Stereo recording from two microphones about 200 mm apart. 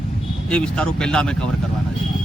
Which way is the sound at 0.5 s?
5° left (ahead or behind).